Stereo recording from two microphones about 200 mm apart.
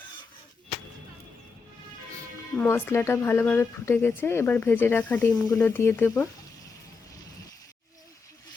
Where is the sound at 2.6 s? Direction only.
10° left (ahead or behind).